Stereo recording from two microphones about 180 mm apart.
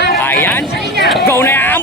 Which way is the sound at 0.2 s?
10° left (ahead or behind).